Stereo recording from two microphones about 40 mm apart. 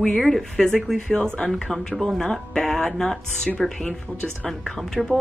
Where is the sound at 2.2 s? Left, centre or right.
Centre.